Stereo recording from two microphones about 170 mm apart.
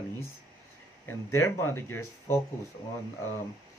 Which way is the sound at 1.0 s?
15° left (ahead or behind).